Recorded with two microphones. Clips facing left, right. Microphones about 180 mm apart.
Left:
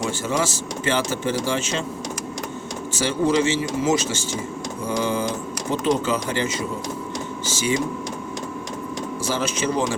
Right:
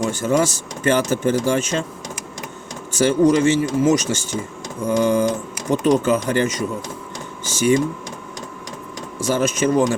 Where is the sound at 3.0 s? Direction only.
50° right (ahead or behind).